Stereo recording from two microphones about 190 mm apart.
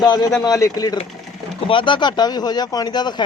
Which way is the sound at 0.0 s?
20° left (ahead or behind).